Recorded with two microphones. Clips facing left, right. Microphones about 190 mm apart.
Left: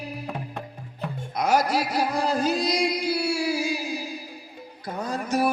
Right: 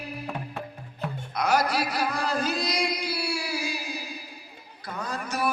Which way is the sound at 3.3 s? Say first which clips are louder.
Left 6 dB; 45° left (ahead or behind).